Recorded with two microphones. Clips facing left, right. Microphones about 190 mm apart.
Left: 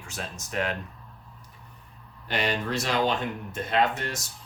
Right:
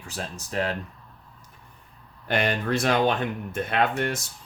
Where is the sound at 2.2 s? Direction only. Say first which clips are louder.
Right 3 dB; 55° right (ahead or behind).